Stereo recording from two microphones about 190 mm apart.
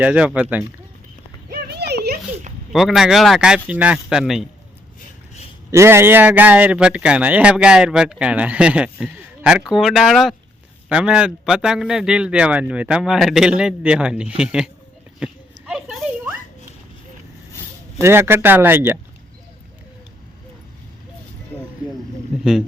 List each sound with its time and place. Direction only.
0.0 s speech: 5° right (ahead or behind)
1.5 s clip-clop: 60° right (ahead or behind)
2.7 s speech: centre (ahead or behind)
5.7 s speech: 15° right (ahead or behind)
15.2 s a sound: 5° right (ahead or behind)
18.0 s speech: 10° right (ahead or behind)
22.3 s speech: centre (ahead or behind)